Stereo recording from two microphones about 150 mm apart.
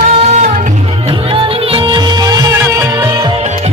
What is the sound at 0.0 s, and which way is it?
Music, 50° right (ahead or behind).